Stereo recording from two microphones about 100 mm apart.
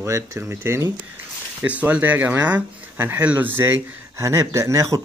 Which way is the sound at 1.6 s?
15° right (ahead or behind).